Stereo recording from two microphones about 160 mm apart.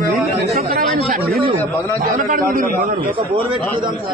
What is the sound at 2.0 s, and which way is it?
A man's voice, 55° right (ahead or behind).